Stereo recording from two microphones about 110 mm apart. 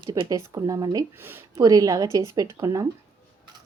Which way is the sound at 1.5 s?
35° right (ahead or behind).